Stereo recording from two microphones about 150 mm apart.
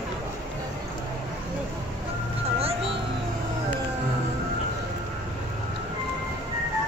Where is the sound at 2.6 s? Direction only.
40° right (ahead or behind).